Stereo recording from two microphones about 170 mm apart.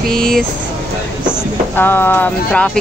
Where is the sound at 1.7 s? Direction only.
10° left (ahead or behind).